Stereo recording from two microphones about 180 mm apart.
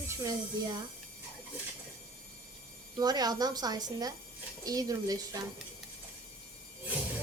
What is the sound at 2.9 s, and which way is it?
A woman's voice, 20° right (ahead or behind).